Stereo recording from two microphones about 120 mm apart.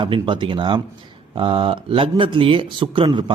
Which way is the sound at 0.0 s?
40° right (ahead or behind).